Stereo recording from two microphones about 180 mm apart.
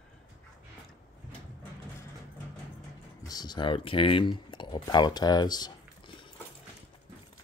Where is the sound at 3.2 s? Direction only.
20° left (ahead or behind).